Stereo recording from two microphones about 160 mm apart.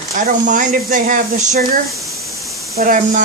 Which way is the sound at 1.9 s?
Centre (ahead or behind).